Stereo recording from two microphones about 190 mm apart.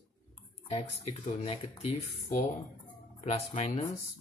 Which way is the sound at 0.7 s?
35° left (ahead or behind).